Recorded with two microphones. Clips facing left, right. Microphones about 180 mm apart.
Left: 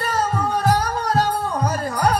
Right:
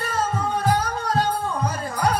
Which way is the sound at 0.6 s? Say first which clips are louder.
Left 2 dB; 40° left (ahead or behind).